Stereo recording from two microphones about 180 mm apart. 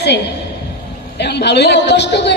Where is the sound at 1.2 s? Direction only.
70° left (ahead or behind).